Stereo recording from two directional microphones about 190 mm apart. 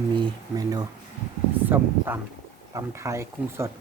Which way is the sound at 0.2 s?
20° right (ahead or behind).